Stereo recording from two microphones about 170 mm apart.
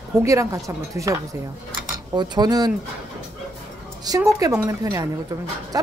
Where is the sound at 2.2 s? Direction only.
25° right (ahead or behind).